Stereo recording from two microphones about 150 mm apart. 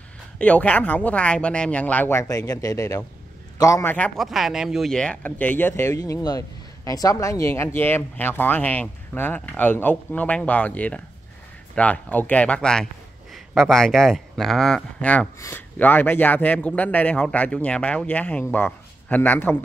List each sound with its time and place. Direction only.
0.4 s a man's voice: 10° left (ahead or behind)
3.9 s speech: 10° left (ahead or behind)
4.3 s speech: centre (ahead or behind)